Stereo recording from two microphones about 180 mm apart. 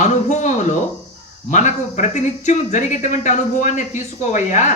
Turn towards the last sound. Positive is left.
turn(degrees=40)  # may be behind; listen again after turning